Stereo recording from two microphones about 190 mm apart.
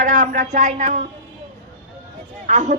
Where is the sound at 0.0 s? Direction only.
45° right (ahead or behind).